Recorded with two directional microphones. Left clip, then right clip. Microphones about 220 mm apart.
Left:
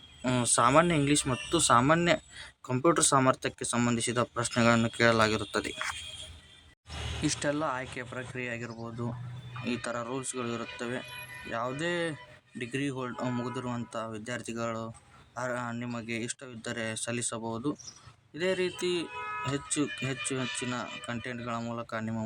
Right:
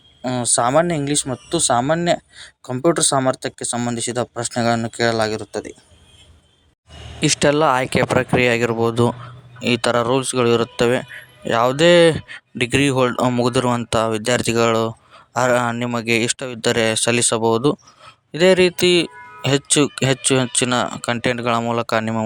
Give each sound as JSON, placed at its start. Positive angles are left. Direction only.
{"t": 0.2, "sound": "speech", "side_deg": -15}
{"t": 7.2, "sound": "speech", "side_deg": -40}